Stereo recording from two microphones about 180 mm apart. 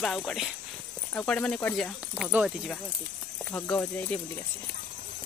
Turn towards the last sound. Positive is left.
turn(degrees=10)  # may be behind; listen again after turning